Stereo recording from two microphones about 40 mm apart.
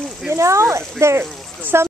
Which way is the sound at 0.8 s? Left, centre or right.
Right.